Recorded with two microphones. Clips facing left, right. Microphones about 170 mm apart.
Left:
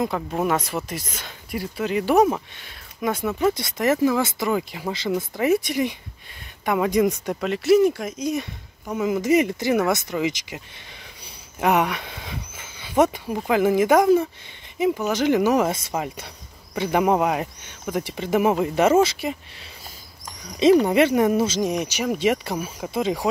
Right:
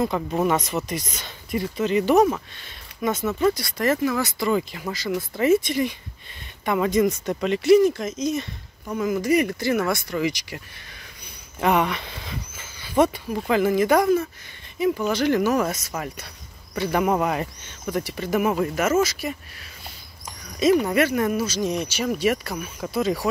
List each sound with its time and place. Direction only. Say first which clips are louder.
0.3 s speech: right 1 dB; 5° left (ahead or behind)
7.3 s speech: right 2 dB; centre (ahead or behind); by 10.6 s 20° left (ahead or behind)
11.6 s speech: left 1 dB; 10° left (ahead or behind)
15.7 s speech: left 3 dB; 25° left (ahead or behind); by 18.0 s 10° left (ahead or behind)
18.0 s speech: left 3 dB; 20° left (ahead or behind)
20.5 s speech: left 3 dB; 20° left (ahead or behind)